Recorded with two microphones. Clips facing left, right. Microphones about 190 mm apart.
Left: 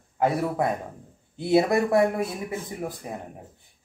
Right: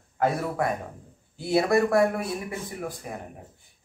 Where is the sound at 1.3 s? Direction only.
20° left (ahead or behind).